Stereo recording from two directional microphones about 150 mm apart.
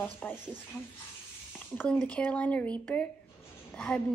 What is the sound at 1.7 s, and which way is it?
A woman's voice, 5° left (ahead or behind).